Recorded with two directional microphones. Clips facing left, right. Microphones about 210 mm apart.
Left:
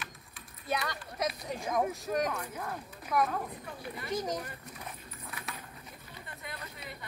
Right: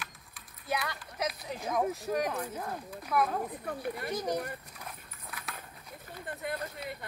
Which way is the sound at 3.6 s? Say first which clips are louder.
Right 6 dB; 55° right (ahead or behind).